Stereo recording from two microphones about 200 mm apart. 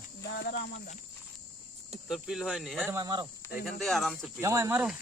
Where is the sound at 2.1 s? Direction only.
Centre (ahead or behind).